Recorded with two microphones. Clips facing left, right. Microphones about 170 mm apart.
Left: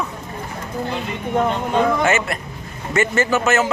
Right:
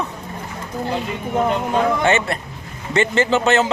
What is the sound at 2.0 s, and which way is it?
A man's voice, 30° right (ahead or behind).